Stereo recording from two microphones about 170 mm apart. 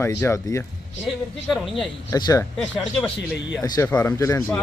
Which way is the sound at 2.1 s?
20° left (ahead or behind).